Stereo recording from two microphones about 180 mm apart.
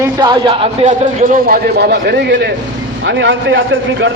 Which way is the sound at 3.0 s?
90° right.